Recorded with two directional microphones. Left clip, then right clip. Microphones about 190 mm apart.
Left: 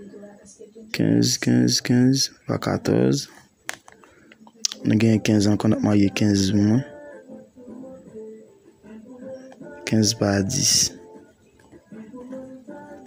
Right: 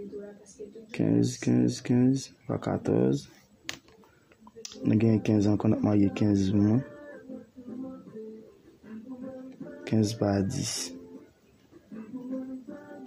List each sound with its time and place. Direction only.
0.9 s speech: 20° left (ahead or behind)
4.6 s speech: 20° left (ahead or behind)
9.8 s speech: 15° left (ahead or behind)